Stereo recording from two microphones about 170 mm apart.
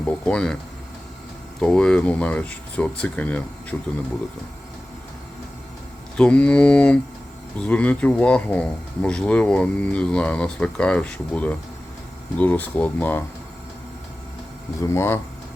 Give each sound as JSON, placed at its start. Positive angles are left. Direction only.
{"t": 0.0, "sound": "speech", "side_deg": 5}
{"t": 1.6, "sound": "speech", "side_deg": 5}
{"t": 6.1, "sound": "speech", "side_deg": 5}
{"t": 14.8, "sound": "speech", "side_deg": 15}